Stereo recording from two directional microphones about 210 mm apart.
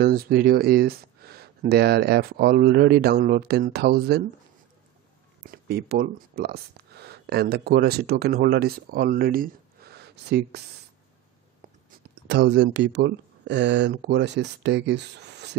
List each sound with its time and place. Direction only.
0.0 s speech: 45° right (ahead or behind)
5.4 s speech: 50° right (ahead or behind)
11.9 s speech: 55° right (ahead or behind)